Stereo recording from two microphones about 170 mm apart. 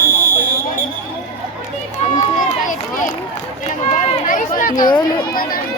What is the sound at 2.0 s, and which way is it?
Run, 40° left (ahead or behind).